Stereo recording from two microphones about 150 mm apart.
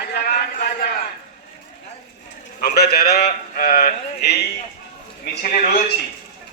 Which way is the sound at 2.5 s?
90° left.